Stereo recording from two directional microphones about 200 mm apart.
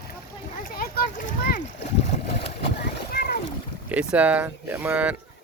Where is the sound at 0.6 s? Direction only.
45° left (ahead or behind).